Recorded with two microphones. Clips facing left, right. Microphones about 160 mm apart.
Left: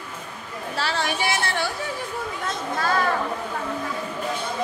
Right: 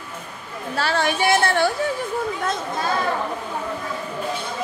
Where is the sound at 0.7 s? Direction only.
55° right (ahead or behind).